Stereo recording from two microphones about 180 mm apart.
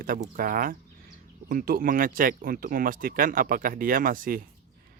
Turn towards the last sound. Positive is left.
turn(degrees=-50)  # may be behind; listen again after turning